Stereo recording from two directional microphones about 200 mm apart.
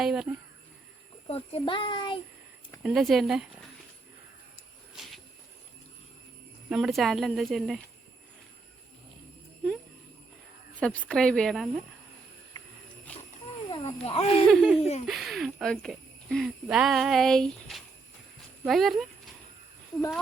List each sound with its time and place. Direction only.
0.0 s speech: 5° right (ahead or behind)
1.3 s a child's voice: 30° left (ahead or behind)
2.8 s speech: centre (ahead or behind)
6.7 s speech: centre (ahead or behind)
10.8 s speech: 5° left (ahead or behind)
13.1 s a sound: 5° left (ahead or behind)
13.7 s speech: 25° left (ahead or behind)
14.5 s speech: 5° right (ahead or behind)
14.8 s speech: 30° left (ahead or behind)
15.0 s speech: centre (ahead or behind)